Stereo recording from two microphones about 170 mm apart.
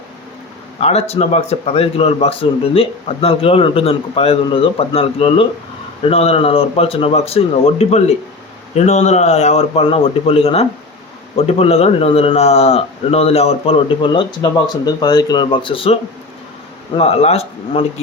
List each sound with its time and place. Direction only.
0.8 s speech: 40° left (ahead or behind)